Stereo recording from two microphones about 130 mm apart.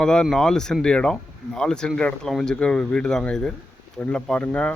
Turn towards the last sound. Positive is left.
turn(degrees=10)  # may be behind; listen again after turning